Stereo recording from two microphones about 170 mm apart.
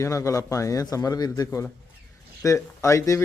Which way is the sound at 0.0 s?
15° left (ahead or behind).